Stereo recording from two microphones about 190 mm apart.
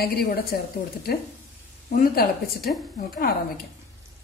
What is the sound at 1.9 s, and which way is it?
A woman's voice, 50° left (ahead or behind).